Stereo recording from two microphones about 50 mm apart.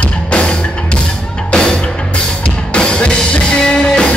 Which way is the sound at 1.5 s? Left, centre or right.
Centre.